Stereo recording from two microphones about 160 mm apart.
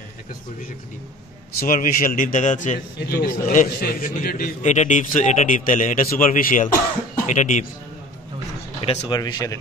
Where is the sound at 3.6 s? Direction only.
65° left (ahead or behind).